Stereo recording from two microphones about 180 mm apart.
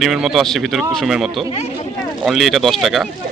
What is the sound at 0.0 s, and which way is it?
Speech, centre (ahead or behind).